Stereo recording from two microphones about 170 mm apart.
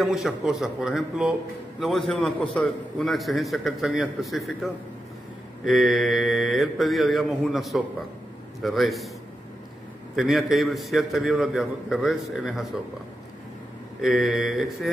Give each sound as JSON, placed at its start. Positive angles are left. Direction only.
{"t": 0.0, "sound": "a man's voice", "side_deg": 0}
{"t": 5.7, "sound": "a man's voice", "side_deg": 0}
{"t": 10.1, "sound": "a man's voice", "side_deg": 0}
{"t": 14.0, "sound": "a man's voice", "side_deg": 0}